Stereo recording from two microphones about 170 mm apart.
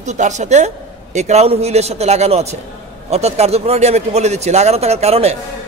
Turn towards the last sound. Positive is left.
turn(degrees=-40)  # may be behind; listen again after turning